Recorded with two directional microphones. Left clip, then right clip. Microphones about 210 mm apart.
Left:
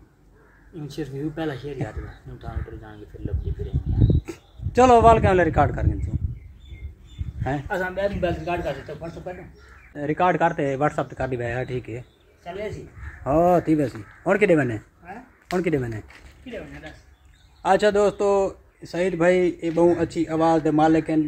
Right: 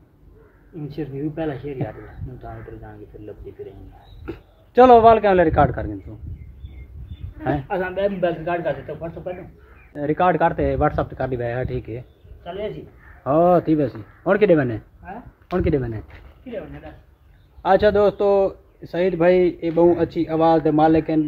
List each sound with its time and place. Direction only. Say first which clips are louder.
0.7 s speech: right 2 dB; 10° right (ahead or behind)
4.3 s a man's voice: right 2 dB; 5° right (ahead or behind)
7.6 s speech: right 2 dB; 30° right (ahead or behind)
7.9 s a man's voice: right 6 dB; 40° right (ahead or behind); by 9.3 s 20° right (ahead or behind)
9.9 s a man's voice: right 3 dB; centre (ahead or behind)
12.4 s speech: right 3 dB; 10° right (ahead or behind)
13.2 s a man's voice: right 3 dB; 10° left (ahead or behind)
16.1 s speech: right 2 dB; 15° right (ahead or behind)
17.6 s a man's voice: right 3 dB; 10° left (ahead or behind)